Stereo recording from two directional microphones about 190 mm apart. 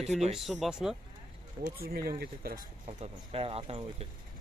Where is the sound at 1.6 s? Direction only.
50° right (ahead or behind).